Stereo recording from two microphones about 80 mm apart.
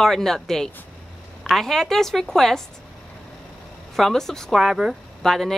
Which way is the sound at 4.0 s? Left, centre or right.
Centre.